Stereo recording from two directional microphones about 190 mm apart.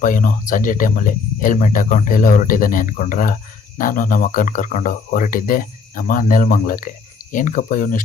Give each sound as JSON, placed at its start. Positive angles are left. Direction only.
{"t": 0.0, "sound": "speech", "side_deg": 45}